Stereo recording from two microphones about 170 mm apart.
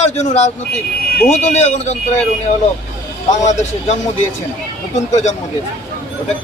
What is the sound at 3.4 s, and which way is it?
Speech, 40° left (ahead or behind).